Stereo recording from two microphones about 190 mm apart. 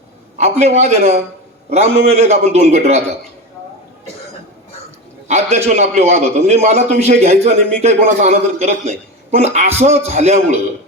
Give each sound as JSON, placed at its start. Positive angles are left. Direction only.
{"t": 0.3, "sound": "a man's voice", "side_deg": -35}
{"t": 5.3, "sound": "a man's voice", "side_deg": -35}